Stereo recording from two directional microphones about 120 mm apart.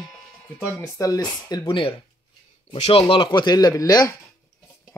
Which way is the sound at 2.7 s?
70° left (ahead or behind).